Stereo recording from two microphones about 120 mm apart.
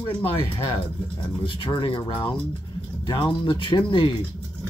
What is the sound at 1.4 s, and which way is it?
Speech, 45° left (ahead or behind).